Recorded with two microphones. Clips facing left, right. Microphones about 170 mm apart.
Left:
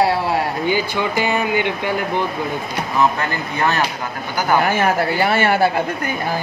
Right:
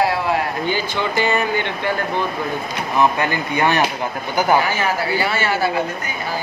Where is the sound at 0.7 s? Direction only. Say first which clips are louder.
Left 2 dB; 15° left (ahead or behind).